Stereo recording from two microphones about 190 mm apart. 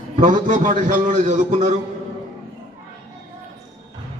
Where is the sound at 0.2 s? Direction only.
45° right (ahead or behind).